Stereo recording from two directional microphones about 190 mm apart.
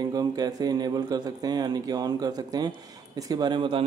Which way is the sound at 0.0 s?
20° right (ahead or behind).